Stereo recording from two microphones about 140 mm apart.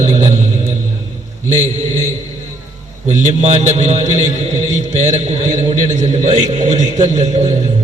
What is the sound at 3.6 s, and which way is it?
Speech, 50° right (ahead or behind).